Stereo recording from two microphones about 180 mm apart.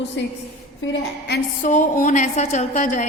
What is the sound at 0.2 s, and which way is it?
Speech, 90° left.